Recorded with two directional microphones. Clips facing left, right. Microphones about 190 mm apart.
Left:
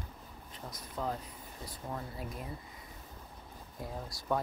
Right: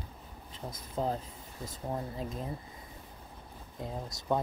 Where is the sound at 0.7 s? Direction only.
30° right (ahead or behind).